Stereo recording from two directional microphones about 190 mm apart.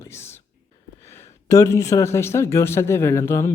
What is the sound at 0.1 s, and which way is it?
Whispering, 15° left (ahead or behind).